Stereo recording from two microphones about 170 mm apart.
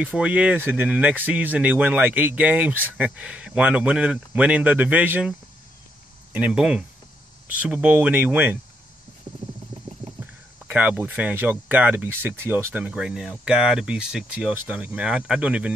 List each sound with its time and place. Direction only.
0.0 s speech: 10° right (ahead or behind)
6.3 s speech: 5° right (ahead or behind)
10.7 s speech: 10° right (ahead or behind)